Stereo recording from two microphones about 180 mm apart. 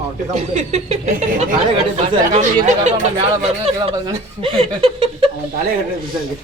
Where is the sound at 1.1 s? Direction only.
50° right (ahead or behind).